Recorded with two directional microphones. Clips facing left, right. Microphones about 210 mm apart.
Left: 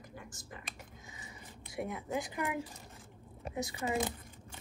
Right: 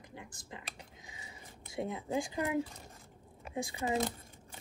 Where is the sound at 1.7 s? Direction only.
25° right (ahead or behind).